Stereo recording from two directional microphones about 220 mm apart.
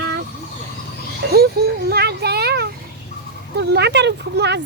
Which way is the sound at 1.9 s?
45° right (ahead or behind).